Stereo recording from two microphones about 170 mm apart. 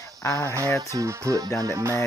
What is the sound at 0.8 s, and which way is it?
Speech, 20° right (ahead or behind).